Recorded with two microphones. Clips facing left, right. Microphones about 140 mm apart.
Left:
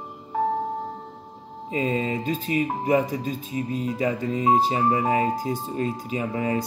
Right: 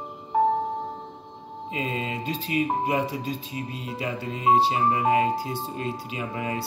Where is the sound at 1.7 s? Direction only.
40° left (ahead or behind).